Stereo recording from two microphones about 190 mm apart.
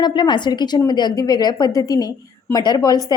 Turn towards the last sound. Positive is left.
turn(degrees=20)  # may be behind; listen again after turning